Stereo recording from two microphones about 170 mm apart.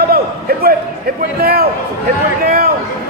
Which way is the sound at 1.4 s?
65° right (ahead or behind).